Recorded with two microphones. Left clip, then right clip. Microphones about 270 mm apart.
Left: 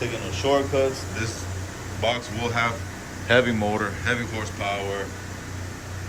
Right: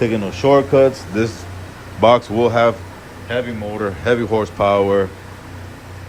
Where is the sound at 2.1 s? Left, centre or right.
Centre.